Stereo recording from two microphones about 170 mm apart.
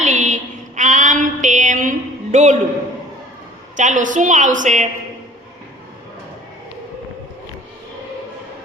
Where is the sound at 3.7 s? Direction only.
45° right (ahead or behind).